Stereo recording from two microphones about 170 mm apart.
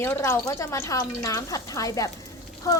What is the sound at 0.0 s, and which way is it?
Speech, 15° left (ahead or behind).